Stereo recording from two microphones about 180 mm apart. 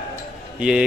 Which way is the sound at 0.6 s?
5° right (ahead or behind).